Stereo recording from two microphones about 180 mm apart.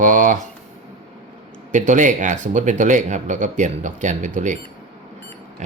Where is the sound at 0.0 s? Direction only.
45° right (ahead or behind).